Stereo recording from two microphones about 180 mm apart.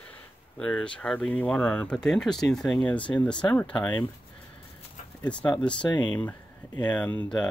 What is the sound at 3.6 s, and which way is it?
Speech, 25° left (ahead or behind).